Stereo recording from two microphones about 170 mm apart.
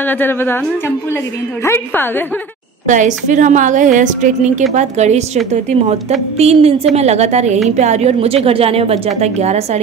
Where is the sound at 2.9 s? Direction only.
45° right (ahead or behind).